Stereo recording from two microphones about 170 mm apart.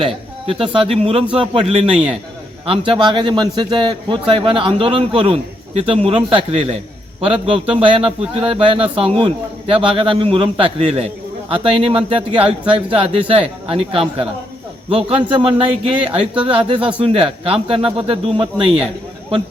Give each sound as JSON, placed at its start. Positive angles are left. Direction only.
{"t": 0.4, "sound": "speech", "side_deg": -30}